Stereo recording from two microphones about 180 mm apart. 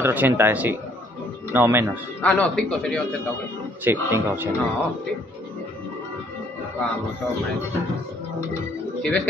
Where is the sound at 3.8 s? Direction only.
10° right (ahead or behind).